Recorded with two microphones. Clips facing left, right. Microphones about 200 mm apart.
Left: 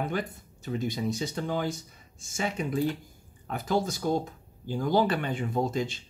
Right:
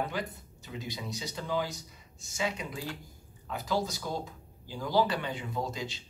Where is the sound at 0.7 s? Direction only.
50° left (ahead or behind).